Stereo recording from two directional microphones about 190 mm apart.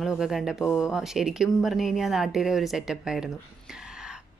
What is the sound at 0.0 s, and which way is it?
Speech, centre (ahead or behind).